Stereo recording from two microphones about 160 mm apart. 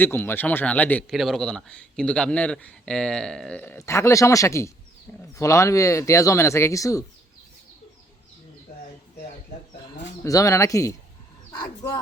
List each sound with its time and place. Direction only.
0.0 s speech: 15° left (ahead or behind)
3.8 s speech: 20° left (ahead or behind)
10.2 s speech: 20° left (ahead or behind)